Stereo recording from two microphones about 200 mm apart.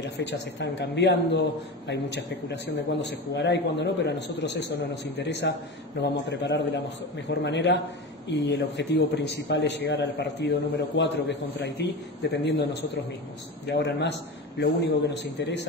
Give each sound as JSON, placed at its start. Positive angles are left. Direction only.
{"t": 0.0, "sound": "a man's voice", "side_deg": 60}
{"t": 13.7, "sound": "a man's voice", "side_deg": 60}